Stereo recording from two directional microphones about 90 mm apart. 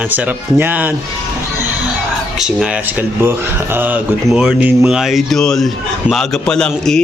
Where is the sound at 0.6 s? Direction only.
20° right (ahead or behind).